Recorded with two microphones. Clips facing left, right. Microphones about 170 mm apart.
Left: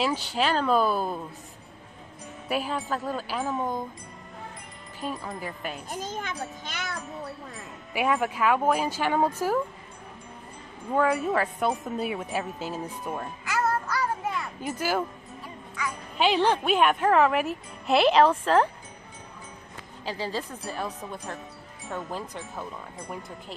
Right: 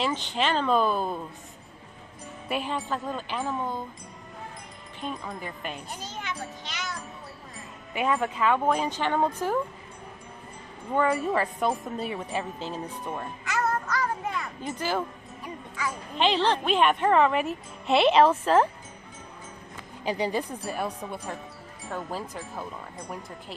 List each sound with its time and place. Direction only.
0.0 s speech: 5° left (ahead or behind)
2.4 s speech: centre (ahead or behind)
5.0 s speech: 5° left (ahead or behind)
5.9 s a sound: 50° left (ahead or behind)
7.9 s speech: 5° left (ahead or behind)
10.9 s speech: centre (ahead or behind)
14.6 s speech: 5° left (ahead or behind)
16.2 s speech: 10° left (ahead or behind)
20.1 s speech: 15° right (ahead or behind); by 23.2 s centre (ahead or behind)